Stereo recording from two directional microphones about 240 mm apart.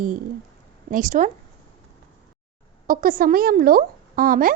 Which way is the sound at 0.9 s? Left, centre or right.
Right.